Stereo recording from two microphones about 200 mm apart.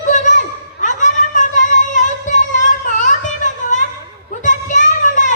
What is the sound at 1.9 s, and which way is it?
Singing, 40° left (ahead or behind).